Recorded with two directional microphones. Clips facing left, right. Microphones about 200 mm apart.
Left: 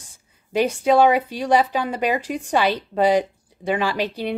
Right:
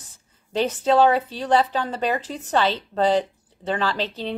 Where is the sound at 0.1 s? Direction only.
10° left (ahead or behind).